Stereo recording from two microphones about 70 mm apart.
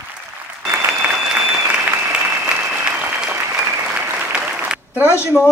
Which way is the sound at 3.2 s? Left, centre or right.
Centre.